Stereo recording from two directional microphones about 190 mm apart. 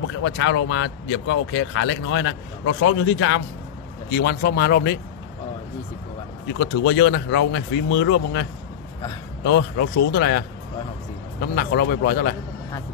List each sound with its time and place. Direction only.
0.2 s speech: 85° left
4.2 s a man's voice: 55° left (ahead or behind)
6.6 s speech: 70° left (ahead or behind)
9.4 s a man's voice: 65° left (ahead or behind)